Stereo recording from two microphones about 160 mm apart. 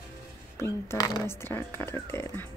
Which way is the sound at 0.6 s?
20° left (ahead or behind).